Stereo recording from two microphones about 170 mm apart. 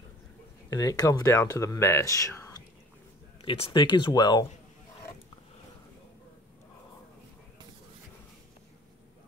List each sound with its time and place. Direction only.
0.7 s speech: 20° left (ahead or behind)
3.4 s speech: 30° left (ahead or behind)